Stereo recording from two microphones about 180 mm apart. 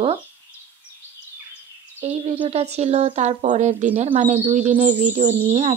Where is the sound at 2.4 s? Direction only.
35° right (ahead or behind).